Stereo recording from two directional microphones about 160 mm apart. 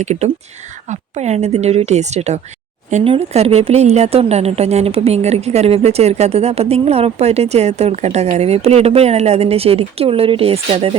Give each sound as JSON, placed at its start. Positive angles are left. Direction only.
{"t": 0.0, "sound": "a woman's voice", "side_deg": -45}